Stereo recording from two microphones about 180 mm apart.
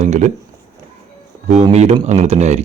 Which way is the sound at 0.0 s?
40° right (ahead or behind).